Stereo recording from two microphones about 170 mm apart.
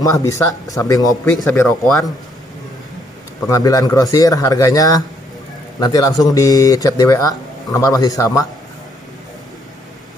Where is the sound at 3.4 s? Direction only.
20° left (ahead or behind).